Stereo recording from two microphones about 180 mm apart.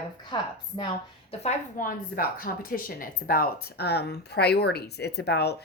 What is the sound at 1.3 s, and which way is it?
A woman's voice, 35° left (ahead or behind).